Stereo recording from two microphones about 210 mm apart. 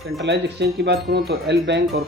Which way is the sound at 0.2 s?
50° right (ahead or behind).